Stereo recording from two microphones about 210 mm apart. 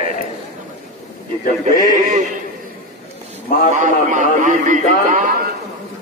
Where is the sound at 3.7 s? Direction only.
35° right (ahead or behind).